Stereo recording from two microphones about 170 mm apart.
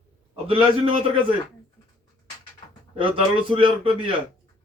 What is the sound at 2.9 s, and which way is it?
A man's voice, 30° right (ahead or behind).